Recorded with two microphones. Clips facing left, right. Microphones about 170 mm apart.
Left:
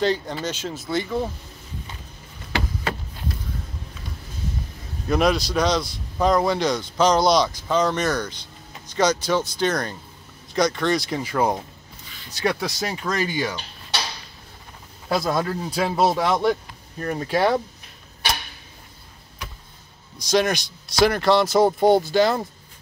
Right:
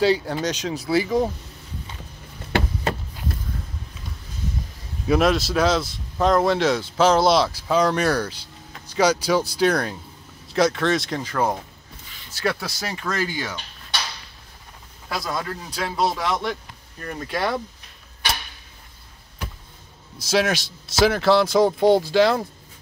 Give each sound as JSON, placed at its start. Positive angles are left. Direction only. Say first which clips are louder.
{"t": 0.0, "sound": "speech", "louder": "right 3 dB", "side_deg": -10}
{"t": 0.5, "sound": "speech", "louder": "right 4 dB", "side_deg": 5}
{"t": 5.0, "sound": "speech", "louder": "right 1 dB", "side_deg": -5}
{"t": 15.2, "sound": "speech", "louder": "left 5 dB", "side_deg": 25}
{"t": 20.2, "sound": "speech", "louder": "left 1 dB", "side_deg": -5}